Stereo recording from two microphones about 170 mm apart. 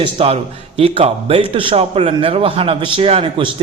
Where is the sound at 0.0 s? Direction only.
35° right (ahead or behind).